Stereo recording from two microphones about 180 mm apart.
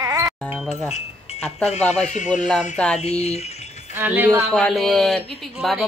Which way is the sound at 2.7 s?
5° left (ahead or behind).